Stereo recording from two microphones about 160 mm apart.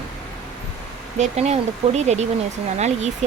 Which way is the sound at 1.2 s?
45° right (ahead or behind).